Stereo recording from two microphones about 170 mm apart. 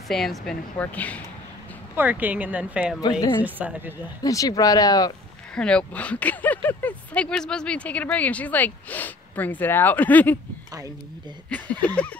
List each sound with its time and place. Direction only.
0.1 s a woman's voice: centre (ahead or behind)
2.0 s speech: 10° right (ahead or behind)
4.2 s speech: 20° left (ahead or behind)
5.5 s speech: 5° left (ahead or behind)
11.4 s speech: 10° left (ahead or behind)